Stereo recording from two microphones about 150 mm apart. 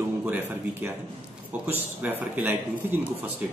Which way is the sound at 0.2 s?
10° right (ahead or behind).